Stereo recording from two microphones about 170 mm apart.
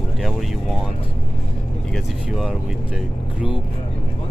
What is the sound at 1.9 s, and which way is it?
Speech, centre (ahead or behind).